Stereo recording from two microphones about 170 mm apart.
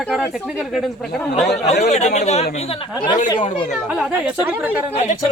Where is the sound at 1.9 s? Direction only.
40° left (ahead or behind).